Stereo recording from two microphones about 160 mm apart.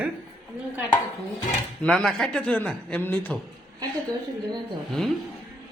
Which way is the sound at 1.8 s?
Centre (ahead or behind).